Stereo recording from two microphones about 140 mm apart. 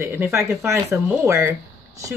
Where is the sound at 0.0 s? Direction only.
15° right (ahead or behind).